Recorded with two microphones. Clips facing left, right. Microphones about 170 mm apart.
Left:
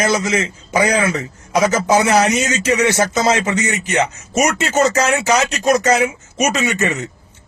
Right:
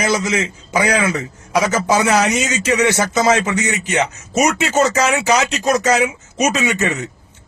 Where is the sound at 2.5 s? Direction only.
15° right (ahead or behind).